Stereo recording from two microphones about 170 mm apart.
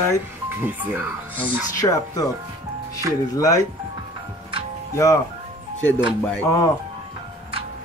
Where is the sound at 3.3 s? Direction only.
20° left (ahead or behind).